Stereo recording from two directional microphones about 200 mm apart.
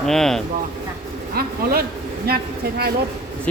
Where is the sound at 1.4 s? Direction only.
50° right (ahead or behind).